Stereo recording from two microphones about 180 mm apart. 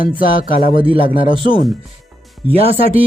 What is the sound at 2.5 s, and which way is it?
Speech, 30° right (ahead or behind).